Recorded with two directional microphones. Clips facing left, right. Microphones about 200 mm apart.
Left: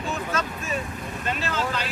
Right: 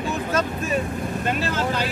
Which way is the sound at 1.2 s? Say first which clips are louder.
Right 2 dB; 45° right (ahead or behind).